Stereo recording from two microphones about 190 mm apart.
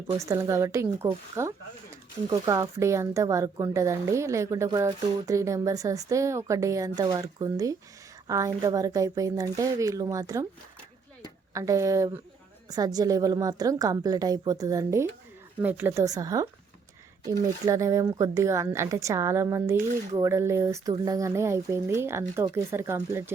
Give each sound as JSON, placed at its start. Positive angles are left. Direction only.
{"t": 0.2, "sound": "speech", "side_deg": -15}
{"t": 11.5, "sound": "a woman's voice", "side_deg": -15}